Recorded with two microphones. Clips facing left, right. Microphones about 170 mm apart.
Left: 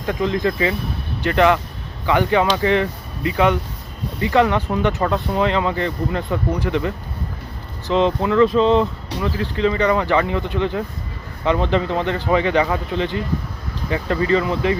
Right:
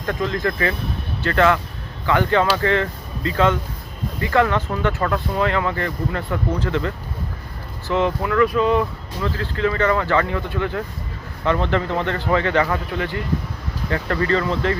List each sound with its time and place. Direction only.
0.0 s speech: 15° left (ahead or behind)